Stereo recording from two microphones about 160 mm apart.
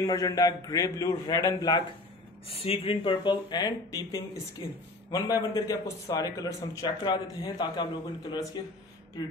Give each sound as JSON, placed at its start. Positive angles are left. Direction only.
{"t": 0.0, "sound": "a man's voice", "side_deg": 20}
{"t": 2.4, "sound": "a man's voice", "side_deg": 40}